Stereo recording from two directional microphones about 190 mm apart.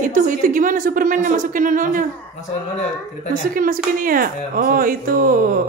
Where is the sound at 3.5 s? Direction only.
45° right (ahead or behind).